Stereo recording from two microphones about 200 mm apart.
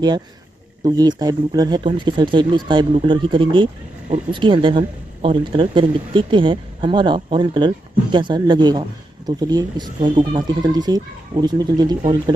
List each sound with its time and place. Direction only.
0.8 s speech: 20° right (ahead or behind)